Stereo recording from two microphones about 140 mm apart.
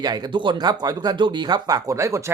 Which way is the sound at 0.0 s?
30° right (ahead or behind).